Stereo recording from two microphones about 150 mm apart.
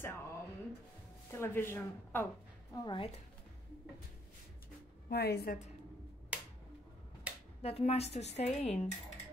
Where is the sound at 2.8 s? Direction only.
35° left (ahead or behind).